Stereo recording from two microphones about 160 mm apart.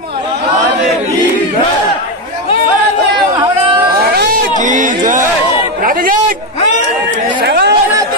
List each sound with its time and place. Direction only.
4.0 s a sound: 80° right
4.6 s music: 55° right (ahead or behind)
5.8 s chatter: 60° right (ahead or behind)
7.4 s chatter: 90° right